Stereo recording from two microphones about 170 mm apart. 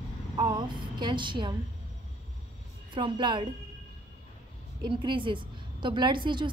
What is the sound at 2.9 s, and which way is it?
Speech, 30° right (ahead or behind).